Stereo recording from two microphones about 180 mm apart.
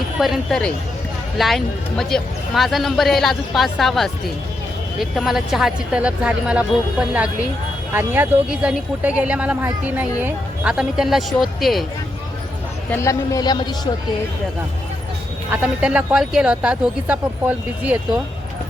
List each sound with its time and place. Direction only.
0.2 s speech: centre (ahead or behind)
7.9 s speech: 10° right (ahead or behind)
12.9 s speech: 15° left (ahead or behind)
15.4 s speech: 5° right (ahead or behind)